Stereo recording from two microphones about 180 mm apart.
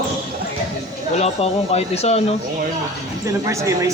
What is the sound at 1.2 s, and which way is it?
Speech, 35° left (ahead or behind).